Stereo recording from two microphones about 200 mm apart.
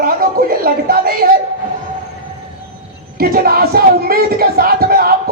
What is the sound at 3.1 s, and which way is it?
Speech, 50° right (ahead or behind).